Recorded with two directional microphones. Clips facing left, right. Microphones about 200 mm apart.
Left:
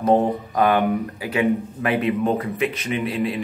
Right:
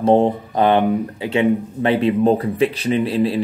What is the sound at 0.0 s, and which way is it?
Speech, 30° right (ahead or behind).